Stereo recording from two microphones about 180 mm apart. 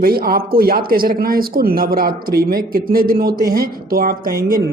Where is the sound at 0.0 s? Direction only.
55° right (ahead or behind).